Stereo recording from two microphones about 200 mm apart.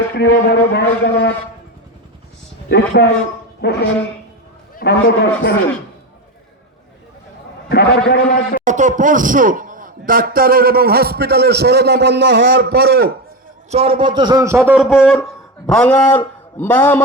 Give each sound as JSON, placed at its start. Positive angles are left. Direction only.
{"t": 0.2, "sound": "a man's voice", "side_deg": 55}
{"t": 2.6, "sound": "a man's voice", "side_deg": 55}
{"t": 7.7, "sound": "a man's voice", "side_deg": 50}
{"t": 8.6, "sound": "a man's voice", "side_deg": -40}
{"t": 13.7, "sound": "a man's voice", "side_deg": -30}